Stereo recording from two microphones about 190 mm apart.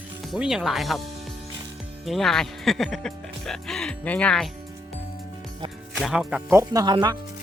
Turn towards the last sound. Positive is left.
turn(degrees=-20)  # may be behind; listen again after turning